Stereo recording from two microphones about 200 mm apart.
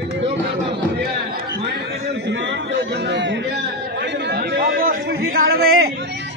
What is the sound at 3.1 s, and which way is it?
Chatter, 60° right (ahead or behind).